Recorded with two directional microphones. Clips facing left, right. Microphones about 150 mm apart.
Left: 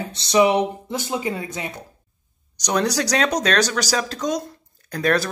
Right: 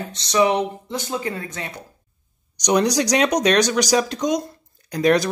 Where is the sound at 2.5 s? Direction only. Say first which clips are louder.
Right 3 dB; 15° right (ahead or behind).